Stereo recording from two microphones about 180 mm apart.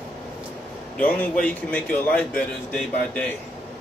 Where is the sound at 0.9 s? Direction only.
10° left (ahead or behind).